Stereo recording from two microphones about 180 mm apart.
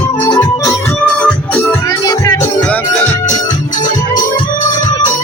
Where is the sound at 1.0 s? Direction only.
5° left (ahead or behind).